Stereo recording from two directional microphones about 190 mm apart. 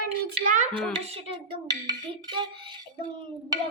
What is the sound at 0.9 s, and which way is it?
Speech, 30° right (ahead or behind).